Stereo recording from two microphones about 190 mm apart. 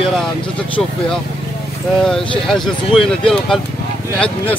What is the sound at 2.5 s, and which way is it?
Speech, centre (ahead or behind).